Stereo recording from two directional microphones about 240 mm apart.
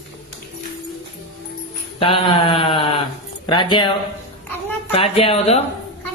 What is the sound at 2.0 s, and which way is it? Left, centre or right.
Sheep, left.